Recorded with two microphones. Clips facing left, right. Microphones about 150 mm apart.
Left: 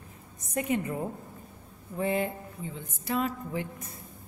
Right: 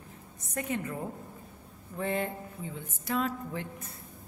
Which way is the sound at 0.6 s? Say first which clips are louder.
Left 4 dB; 15° left (ahead or behind).